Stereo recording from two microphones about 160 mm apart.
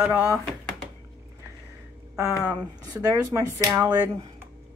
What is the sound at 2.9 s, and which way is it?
Speech, 20° right (ahead or behind).